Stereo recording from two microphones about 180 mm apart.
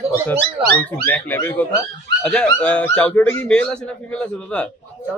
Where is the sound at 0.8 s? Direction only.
10° left (ahead or behind).